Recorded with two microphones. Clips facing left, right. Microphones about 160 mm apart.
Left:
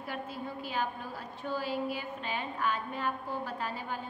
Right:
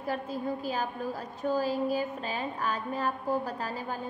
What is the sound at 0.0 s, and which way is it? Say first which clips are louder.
A woman's voice: right 6 dB; 40° right (ahead or behind).